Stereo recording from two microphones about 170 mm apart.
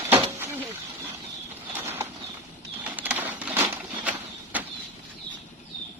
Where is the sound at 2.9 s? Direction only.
10° right (ahead or behind).